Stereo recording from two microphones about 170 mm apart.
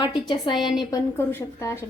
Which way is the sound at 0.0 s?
25° left (ahead or behind).